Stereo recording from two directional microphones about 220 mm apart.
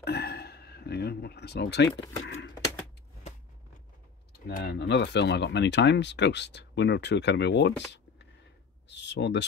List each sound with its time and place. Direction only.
0.0 s a sound: 45° left (ahead or behind)
4.5 s speech: 40° left (ahead or behind)
8.8 s speech: 50° left (ahead or behind)